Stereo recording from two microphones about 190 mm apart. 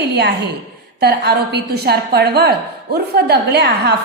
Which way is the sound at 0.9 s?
55° right (ahead or behind).